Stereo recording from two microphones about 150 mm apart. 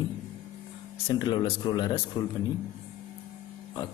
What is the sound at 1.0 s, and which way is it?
A man's voice, 30° left (ahead or behind).